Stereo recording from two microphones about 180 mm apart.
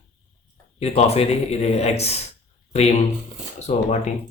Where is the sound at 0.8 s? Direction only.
35° left (ahead or behind).